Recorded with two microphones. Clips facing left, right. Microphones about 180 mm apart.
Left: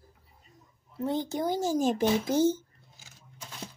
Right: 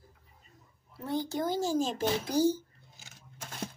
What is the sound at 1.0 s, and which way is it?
Speech, 20° left (ahead or behind).